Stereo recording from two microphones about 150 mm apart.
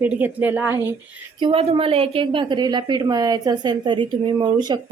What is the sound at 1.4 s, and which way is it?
A woman's voice, 40° right (ahead or behind).